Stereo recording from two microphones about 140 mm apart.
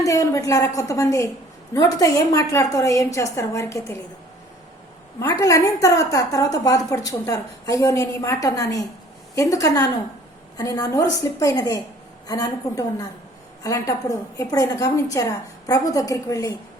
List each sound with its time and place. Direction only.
0.0 s a woman's voice: 25° left (ahead or behind)
5.2 s a woman's voice: 25° left (ahead or behind)